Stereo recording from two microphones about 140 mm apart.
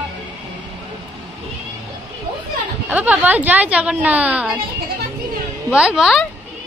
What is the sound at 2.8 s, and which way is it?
A woman's voice, 10° right (ahead or behind).